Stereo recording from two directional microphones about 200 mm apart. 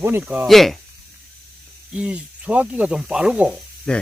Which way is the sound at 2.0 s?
5° right (ahead or behind).